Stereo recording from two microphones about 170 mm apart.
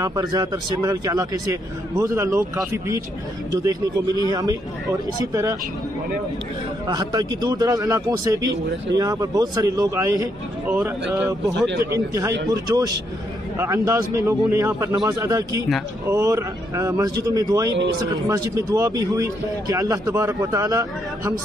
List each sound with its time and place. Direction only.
0.0 s speech: 20° right (ahead or behind)
4.3 s speech: 20° right (ahead or behind)
6.9 s speech: 25° right (ahead or behind)
10.8 s speech: 10° right (ahead or behind)